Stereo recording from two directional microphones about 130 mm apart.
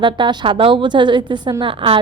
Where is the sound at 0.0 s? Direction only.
35° right (ahead or behind).